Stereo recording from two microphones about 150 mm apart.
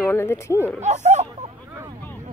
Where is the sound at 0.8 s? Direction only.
50° right (ahead or behind).